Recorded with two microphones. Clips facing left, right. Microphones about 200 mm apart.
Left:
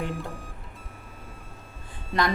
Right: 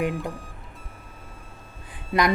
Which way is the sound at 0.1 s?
Centre (ahead or behind).